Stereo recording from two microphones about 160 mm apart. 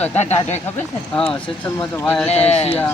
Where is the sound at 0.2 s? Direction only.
45° left (ahead or behind).